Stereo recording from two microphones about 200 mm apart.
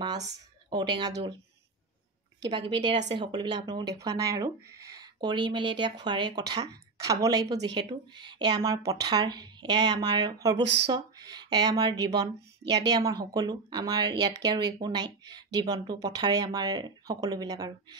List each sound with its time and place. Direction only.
0.0 s speech: 20° right (ahead or behind)
2.5 s speech: 25° right (ahead or behind)
10.6 s speech: 60° right (ahead or behind)
10.9 s speech: 20° right (ahead or behind)